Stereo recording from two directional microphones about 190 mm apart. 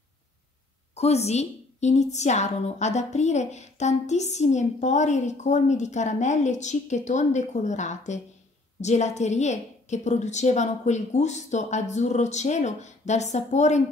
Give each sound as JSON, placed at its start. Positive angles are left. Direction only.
{"t": 0.9, "sound": "a woman's voice", "side_deg": 35}